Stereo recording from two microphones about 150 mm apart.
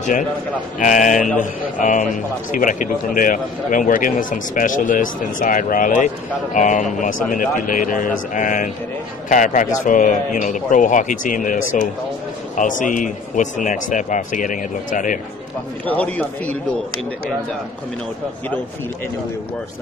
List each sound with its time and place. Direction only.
0.7 s a man's voice: 55° left (ahead or behind)
15.8 s speech: 10° left (ahead or behind)